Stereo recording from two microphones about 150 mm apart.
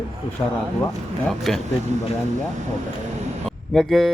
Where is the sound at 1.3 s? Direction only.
Centre (ahead or behind).